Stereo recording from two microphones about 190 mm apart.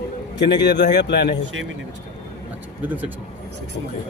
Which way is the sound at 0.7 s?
65° left (ahead or behind).